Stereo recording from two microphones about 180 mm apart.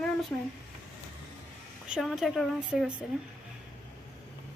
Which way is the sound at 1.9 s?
Centre (ahead or behind).